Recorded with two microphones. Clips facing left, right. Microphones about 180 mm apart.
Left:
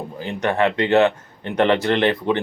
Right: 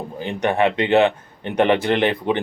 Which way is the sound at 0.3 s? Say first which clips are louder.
Right 1 dB; 15° right (ahead or behind).